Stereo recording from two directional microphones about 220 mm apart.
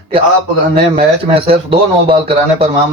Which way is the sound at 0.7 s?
25° right (ahead or behind).